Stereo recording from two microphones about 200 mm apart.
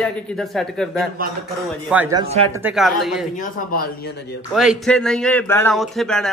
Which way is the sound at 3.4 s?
40° left (ahead or behind).